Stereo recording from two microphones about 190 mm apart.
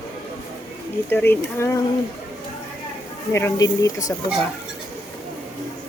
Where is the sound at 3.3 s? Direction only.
15° left (ahead or behind).